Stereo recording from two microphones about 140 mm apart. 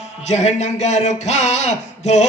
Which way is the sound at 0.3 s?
55° left (ahead or behind).